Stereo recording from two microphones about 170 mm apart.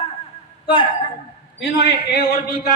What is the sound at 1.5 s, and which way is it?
Speech, 80° left.